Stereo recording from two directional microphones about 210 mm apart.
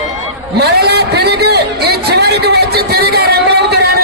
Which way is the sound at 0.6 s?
50° right (ahead or behind).